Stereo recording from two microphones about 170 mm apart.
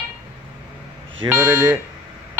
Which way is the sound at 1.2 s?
10° right (ahead or behind).